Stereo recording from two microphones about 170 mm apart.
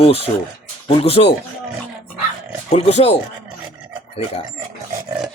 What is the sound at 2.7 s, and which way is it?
Speech, 35° left (ahead or behind).